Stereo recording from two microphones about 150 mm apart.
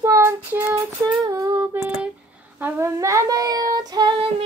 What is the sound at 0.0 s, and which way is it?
Child singing, 20° right (ahead or behind).